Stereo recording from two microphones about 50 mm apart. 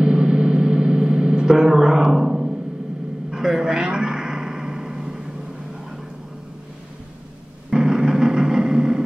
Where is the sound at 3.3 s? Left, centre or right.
Centre.